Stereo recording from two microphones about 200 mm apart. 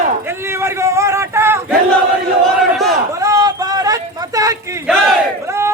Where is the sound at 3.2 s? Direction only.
15° right (ahead or behind).